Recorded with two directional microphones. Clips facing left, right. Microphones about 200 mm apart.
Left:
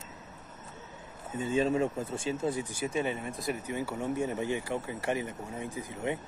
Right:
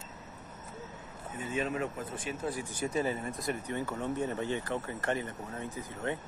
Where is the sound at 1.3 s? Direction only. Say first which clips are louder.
Left 6 dB; 30° left (ahead or behind).